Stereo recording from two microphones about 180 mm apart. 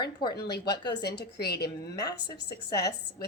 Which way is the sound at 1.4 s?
65° left (ahead or behind).